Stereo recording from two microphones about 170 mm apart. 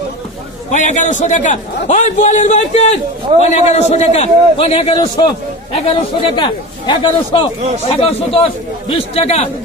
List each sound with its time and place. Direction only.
0.7 s a man's voice: 45° left (ahead or behind)